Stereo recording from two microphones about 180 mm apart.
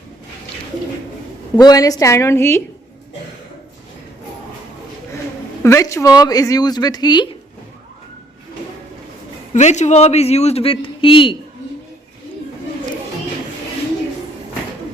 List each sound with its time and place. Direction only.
1.5 s a woman's voice: 20° left (ahead or behind)
5.6 s speech: 15° left (ahead or behind)
9.5 s a man's voice: 40° left (ahead or behind)